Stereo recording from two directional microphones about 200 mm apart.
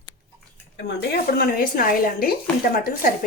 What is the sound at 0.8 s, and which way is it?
Speech, 55° left (ahead or behind).